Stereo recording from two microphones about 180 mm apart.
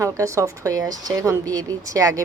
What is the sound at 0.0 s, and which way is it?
Speech, 15° right (ahead or behind).